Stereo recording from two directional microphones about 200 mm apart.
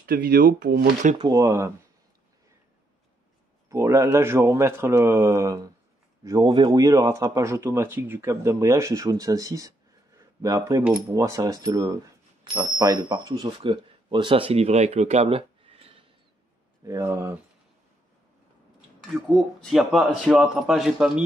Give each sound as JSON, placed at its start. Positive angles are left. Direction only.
{"t": 0.0, "sound": "speech", "side_deg": -45}
{"t": 1.1, "sound": "speech", "side_deg": -20}
{"t": 3.6, "sound": "speech", "side_deg": -15}
{"t": 16.8, "sound": "speech", "side_deg": -15}
{"t": 19.2, "sound": "speech", "side_deg": 0}